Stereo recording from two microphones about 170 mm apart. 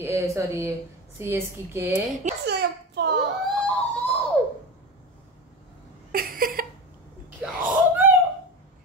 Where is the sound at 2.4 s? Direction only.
80° right.